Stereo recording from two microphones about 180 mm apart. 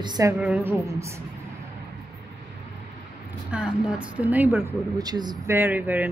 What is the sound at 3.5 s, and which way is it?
Speech, 5° right (ahead or behind).